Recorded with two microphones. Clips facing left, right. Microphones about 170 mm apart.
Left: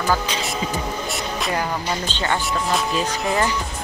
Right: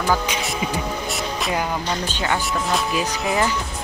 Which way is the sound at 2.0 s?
10° right (ahead or behind).